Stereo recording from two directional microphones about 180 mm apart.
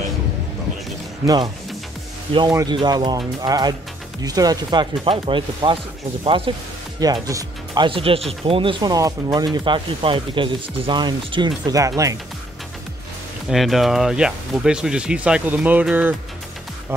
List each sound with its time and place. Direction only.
1.2 s speech: 20° right (ahead or behind)
2.5 s speech: 25° right (ahead or behind)
7.0 s speech: 20° right (ahead or behind)
13.5 s speech: centre (ahead or behind)